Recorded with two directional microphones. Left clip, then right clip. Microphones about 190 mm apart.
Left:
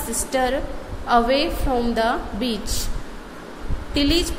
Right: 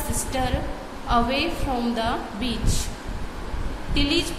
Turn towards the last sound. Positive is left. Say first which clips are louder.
# left 3 dB
turn(degrees=30)  # may be behind; listen again after turning